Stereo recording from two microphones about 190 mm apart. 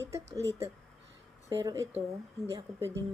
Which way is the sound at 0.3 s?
15° right (ahead or behind).